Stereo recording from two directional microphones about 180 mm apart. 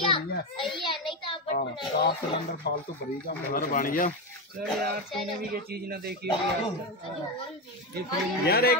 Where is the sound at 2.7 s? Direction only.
65° left (ahead or behind).